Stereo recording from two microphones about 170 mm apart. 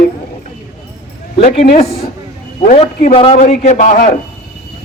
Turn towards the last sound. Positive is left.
turn(degrees=50)  # may be behind; listen again after turning